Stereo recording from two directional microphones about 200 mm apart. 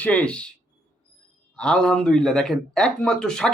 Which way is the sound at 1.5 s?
5° left (ahead or behind).